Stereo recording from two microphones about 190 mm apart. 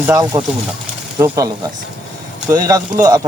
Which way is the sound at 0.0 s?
15° right (ahead or behind).